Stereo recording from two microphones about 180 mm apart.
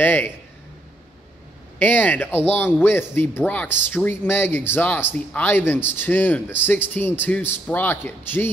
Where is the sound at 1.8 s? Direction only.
10° left (ahead or behind).